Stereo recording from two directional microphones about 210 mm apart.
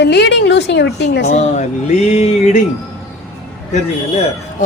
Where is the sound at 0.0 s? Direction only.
55° left (ahead or behind).